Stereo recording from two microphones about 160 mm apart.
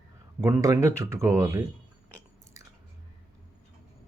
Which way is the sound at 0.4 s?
20° right (ahead or behind).